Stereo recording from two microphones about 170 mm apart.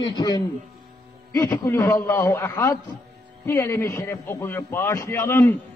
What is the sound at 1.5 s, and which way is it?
A man's voice, 15° left (ahead or behind).